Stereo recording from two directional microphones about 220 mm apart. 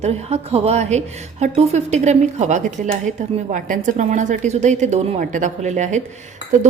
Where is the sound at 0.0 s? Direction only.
30° right (ahead or behind).